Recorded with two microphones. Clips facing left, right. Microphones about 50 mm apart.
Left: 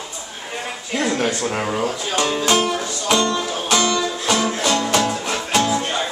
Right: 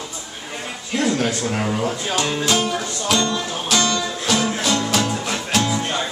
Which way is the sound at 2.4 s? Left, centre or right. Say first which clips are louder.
Left 2 dB; centre.